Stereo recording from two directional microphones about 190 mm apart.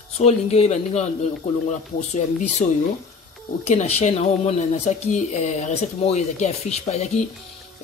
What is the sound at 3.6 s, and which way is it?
Speech, 35° left (ahead or behind).